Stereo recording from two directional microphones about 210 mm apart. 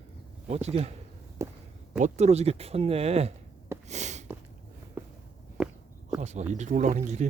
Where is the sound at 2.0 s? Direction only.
30° right (ahead or behind).